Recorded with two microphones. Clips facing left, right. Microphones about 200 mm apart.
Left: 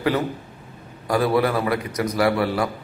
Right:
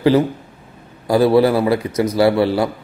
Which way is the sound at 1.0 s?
30° right (ahead or behind).